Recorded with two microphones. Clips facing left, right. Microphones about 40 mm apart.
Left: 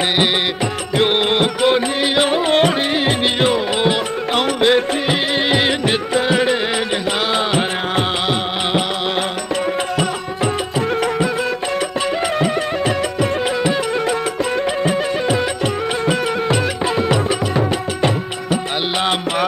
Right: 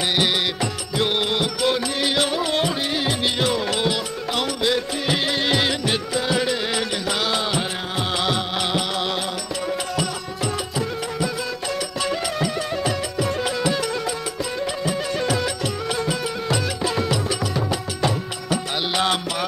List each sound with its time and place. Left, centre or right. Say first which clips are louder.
0.9 s music: left 6 dB; left
5.0 s music: left 4 dB; left
12.4 s music: left 6 dB; left
14.9 s music: left 5 dB; left